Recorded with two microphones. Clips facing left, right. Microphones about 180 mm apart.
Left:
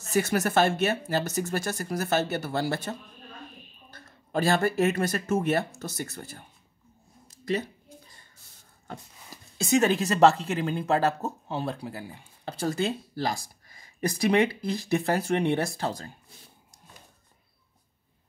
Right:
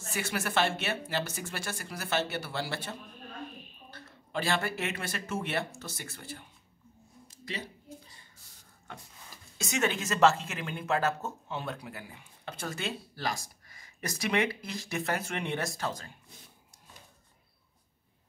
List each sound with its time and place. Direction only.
0.0 s speech: 40° left (ahead or behind)
7.2 s a sound: 45° left (ahead or behind)
9.6 s speech: 35° left (ahead or behind)